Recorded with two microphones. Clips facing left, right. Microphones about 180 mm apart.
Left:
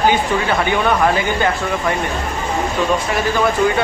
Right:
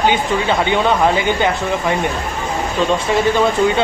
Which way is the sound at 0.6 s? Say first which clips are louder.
Right 1 dB; 20° right (ahead or behind).